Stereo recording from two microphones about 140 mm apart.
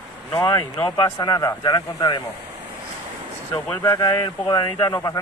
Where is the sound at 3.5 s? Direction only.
20° left (ahead or behind).